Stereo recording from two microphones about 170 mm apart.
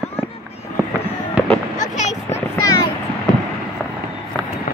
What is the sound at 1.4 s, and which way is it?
Fireworks, 5° right (ahead or behind).